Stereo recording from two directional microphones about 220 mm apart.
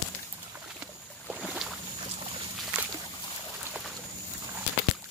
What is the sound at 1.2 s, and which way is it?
Boat, 5° right (ahead or behind).